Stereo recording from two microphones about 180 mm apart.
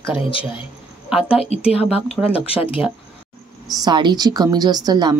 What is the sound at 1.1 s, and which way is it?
A woman's voice, 5° right (ahead or behind).